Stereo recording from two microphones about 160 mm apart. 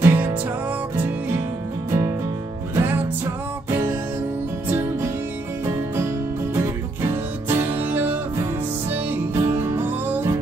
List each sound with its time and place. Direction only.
0.0 s music: 10° right (ahead or behind)
1.9 s music: 20° right (ahead or behind)
6.5 s music: 15° right (ahead or behind)